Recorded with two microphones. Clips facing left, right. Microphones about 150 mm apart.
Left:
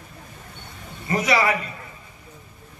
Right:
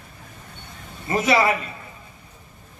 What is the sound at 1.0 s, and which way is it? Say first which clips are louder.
Speech: right 2 dB; 25° right (ahead or behind).